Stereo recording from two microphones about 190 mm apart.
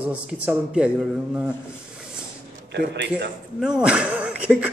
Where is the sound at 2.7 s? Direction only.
60° right (ahead or behind).